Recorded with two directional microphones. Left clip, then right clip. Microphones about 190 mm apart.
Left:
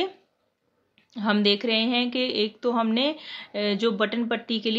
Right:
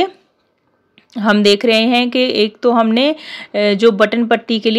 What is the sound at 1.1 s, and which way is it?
Speech, 40° right (ahead or behind).